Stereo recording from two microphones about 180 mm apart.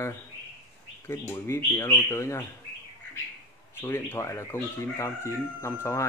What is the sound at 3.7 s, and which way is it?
Speech, 10° left (ahead or behind).